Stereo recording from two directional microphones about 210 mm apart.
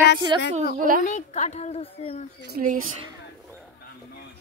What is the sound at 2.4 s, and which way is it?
Speech, 40° right (ahead or behind).